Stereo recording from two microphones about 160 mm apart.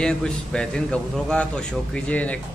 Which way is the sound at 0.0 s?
5° left (ahead or behind).